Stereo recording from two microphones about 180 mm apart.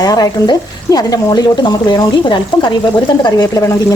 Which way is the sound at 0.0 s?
20° left (ahead or behind).